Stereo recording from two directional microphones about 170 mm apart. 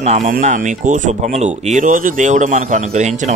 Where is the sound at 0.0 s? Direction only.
40° right (ahead or behind).